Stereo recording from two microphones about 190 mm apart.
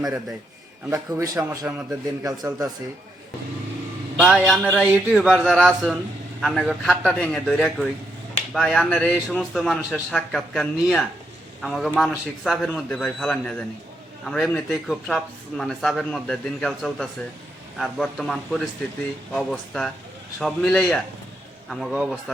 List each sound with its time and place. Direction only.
0.0 s speech: centre (ahead or behind)
0.9 s a man's voice: 20° right (ahead or behind)
1.7 s a man's voice: 5° right (ahead or behind)
2.2 s a man's voice: 20° right (ahead or behind)
4.2 s speech: centre (ahead or behind)